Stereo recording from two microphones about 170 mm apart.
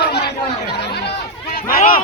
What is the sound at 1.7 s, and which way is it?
Speech, 60° left (ahead or behind).